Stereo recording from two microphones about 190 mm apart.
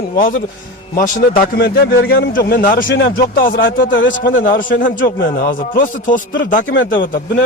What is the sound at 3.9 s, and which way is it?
Speech, 80° left.